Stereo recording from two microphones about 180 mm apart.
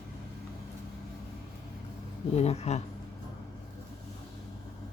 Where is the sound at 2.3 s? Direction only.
35° left (ahead or behind).